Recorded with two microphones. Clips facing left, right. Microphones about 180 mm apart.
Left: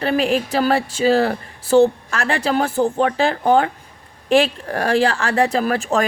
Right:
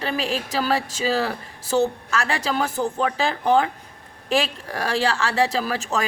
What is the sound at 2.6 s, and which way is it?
Speech, 35° left (ahead or behind).